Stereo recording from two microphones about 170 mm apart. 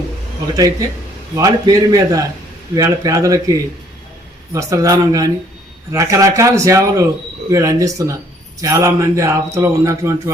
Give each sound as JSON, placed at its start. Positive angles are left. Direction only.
{"t": 0.5, "sound": "speech", "side_deg": -20}
{"t": 4.5, "sound": "a man's voice", "side_deg": -20}